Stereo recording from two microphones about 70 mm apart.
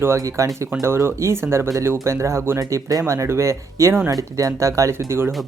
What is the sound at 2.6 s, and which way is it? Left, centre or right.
Speech, right.